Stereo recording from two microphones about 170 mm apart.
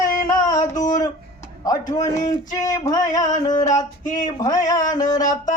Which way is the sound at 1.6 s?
20° left (ahead or behind).